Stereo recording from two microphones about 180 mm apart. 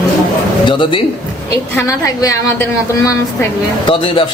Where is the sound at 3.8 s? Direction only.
30° left (ahead or behind).